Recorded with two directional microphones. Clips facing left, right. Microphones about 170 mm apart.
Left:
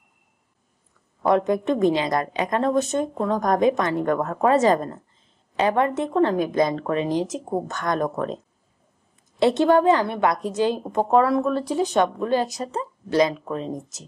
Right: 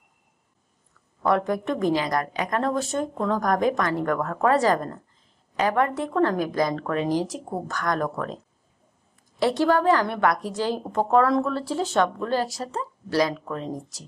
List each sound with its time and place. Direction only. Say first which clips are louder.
1.2 s a woman's voice: left 3 dB; 20° left (ahead or behind)
9.4 s a woman's voice: left 4 dB; 20° left (ahead or behind)